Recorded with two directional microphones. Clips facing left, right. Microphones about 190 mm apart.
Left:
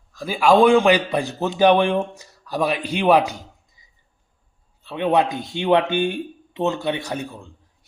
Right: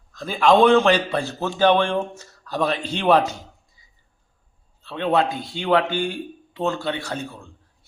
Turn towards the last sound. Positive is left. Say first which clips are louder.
# left 2 dB
turn(degrees=15)  # may be behind; listen again after turning